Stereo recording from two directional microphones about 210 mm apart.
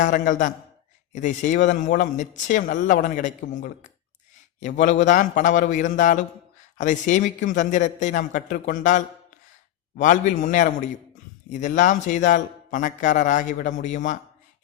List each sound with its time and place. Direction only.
0.0 s speech: 35° left (ahead or behind)
10.0 s speech: 35° left (ahead or behind)